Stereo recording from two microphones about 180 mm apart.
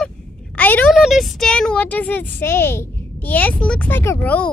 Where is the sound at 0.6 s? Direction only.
10° left (ahead or behind).